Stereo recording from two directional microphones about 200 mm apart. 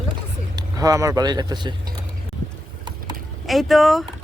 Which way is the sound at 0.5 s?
15° right (ahead or behind).